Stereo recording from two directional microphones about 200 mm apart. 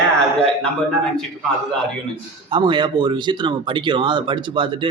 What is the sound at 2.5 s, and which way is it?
Speech, 25° right (ahead or behind).